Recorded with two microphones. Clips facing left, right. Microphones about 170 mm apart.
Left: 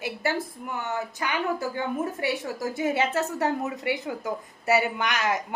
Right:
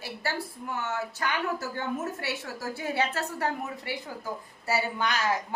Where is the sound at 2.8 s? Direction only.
20° left (ahead or behind).